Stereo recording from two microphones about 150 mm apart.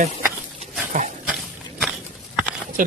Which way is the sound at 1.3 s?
5° right (ahead or behind).